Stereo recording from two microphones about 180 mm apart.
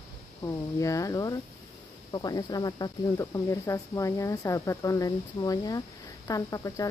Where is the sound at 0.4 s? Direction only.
20° left (ahead or behind).